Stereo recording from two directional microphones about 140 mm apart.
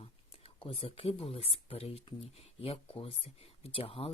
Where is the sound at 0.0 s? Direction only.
45° left (ahead or behind).